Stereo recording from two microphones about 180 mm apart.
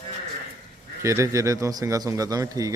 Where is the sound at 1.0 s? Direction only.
15° right (ahead or behind).